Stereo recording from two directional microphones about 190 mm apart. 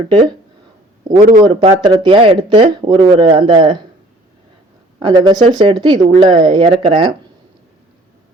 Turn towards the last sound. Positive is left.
turn(degrees=-25)  # may be behind; listen again after turning